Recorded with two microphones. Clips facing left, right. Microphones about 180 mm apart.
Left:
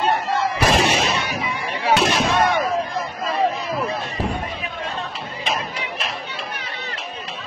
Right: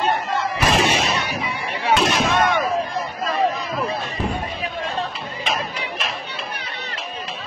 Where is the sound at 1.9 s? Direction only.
35° left (ahead or behind).